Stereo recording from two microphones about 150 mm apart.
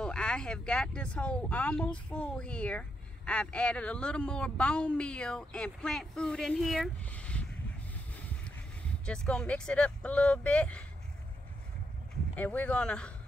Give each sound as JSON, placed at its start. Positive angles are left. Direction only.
{"t": 0.0, "sound": "speech", "side_deg": 5}
{"t": 7.1, "sound": "a sound", "side_deg": 10}
{"t": 9.0, "sound": "speech", "side_deg": 5}
{"t": 12.4, "sound": "speech", "side_deg": 10}